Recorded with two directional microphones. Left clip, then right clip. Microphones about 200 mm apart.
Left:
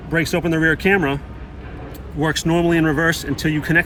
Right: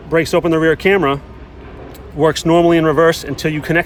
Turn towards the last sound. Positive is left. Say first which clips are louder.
# right 2 dB
turn(degrees=-45)  # may be behind; listen again after turning